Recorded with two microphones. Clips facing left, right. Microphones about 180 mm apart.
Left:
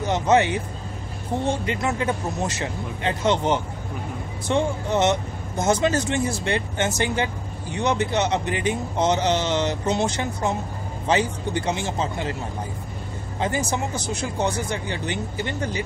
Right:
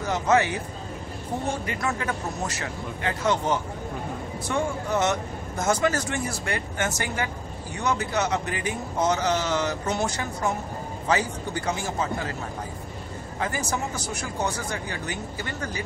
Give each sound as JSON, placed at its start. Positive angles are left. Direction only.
{"t": 0.0, "sound": "speech", "side_deg": 20}
{"t": 1.7, "sound": "speech", "side_deg": 20}
{"t": 13.4, "sound": "speech", "side_deg": 20}